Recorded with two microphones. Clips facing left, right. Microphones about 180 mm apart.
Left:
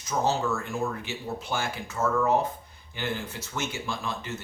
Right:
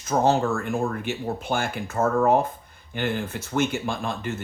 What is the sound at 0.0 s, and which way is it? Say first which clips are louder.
Speech: right 6 dB; 55° right (ahead or behind).